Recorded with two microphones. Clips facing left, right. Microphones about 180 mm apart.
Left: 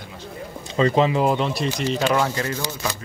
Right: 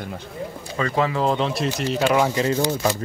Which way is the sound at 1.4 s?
Centre (ahead or behind).